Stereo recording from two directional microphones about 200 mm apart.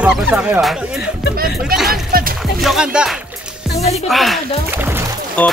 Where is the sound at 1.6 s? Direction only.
Centre (ahead or behind).